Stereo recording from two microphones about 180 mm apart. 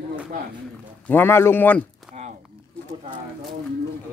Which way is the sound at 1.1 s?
15° left (ahead or behind).